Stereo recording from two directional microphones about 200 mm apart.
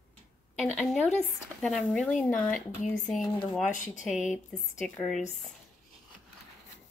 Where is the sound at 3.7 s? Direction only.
40° left (ahead or behind).